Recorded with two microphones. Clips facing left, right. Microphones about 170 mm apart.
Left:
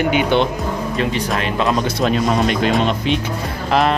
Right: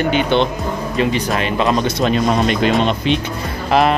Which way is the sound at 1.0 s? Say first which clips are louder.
Right 4 dB; centre (ahead or behind).